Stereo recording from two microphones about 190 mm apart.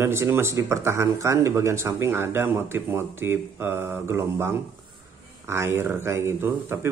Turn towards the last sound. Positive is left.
turn(degrees=-10)  # may be behind; listen again after turning